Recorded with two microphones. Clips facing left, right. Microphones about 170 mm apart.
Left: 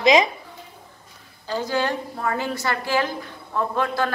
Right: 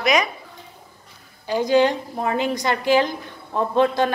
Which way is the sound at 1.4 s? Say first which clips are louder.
Right 7 dB; 15° right (ahead or behind).